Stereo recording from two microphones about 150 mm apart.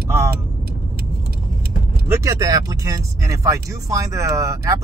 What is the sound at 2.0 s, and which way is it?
Speech, 20° right (ahead or behind).